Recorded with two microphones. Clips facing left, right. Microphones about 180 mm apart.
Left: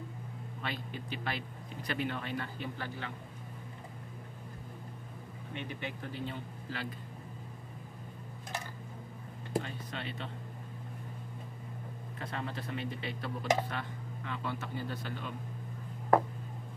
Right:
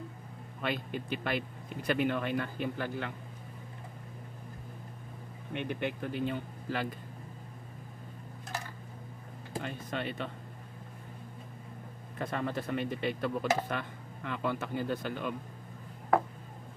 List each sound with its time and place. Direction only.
0.6 s speech: 55° right (ahead or behind)
5.5 s speech: 60° right (ahead or behind)
9.8 s speech: 50° right (ahead or behind)
12.2 s speech: 50° right (ahead or behind)